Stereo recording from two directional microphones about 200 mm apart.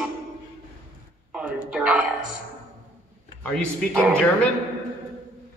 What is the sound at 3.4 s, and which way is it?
Speech, 5° left (ahead or behind).